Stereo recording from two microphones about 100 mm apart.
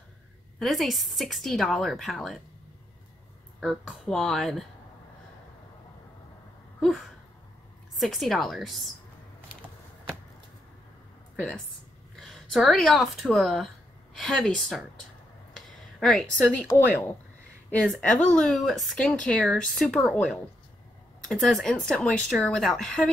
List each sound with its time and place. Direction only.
0.6 s speech: centre (ahead or behind)
3.6 s speech: centre (ahead or behind)
8.0 s speech: centre (ahead or behind)
11.3 s speech: 5° left (ahead or behind)
15.5 s a sound: 5° left (ahead or behind)
16.7 s speech: 25° left (ahead or behind)
17.8 s speech: 5° left (ahead or behind)